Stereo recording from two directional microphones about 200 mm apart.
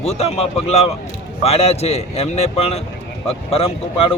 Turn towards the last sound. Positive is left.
turn(degrees=30)  # may be behind; listen again after turning